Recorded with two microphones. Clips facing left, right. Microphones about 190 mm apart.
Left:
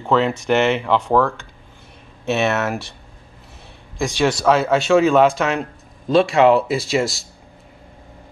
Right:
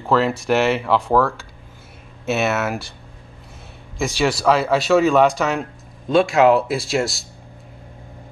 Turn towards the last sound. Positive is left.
turn(degrees=0)  # may be behind; listen again after turning